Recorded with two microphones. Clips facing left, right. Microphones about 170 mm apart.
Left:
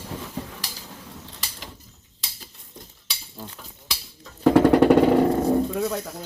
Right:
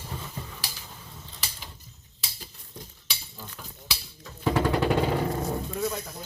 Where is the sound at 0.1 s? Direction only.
75° left (ahead or behind).